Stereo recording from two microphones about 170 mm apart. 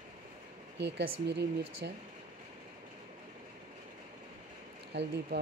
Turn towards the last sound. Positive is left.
turn(degrees=-85)